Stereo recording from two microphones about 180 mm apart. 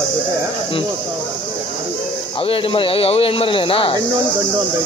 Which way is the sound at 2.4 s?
30° left (ahead or behind).